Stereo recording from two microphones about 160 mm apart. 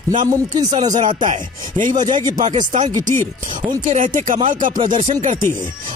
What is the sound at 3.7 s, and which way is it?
Speech, 55° right (ahead or behind).